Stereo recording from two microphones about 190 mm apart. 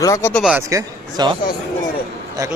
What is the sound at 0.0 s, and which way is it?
Speech, 15° left (ahead or behind).